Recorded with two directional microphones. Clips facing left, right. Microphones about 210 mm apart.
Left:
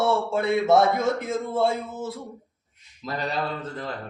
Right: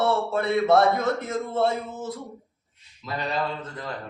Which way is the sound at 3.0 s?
40° left (ahead or behind).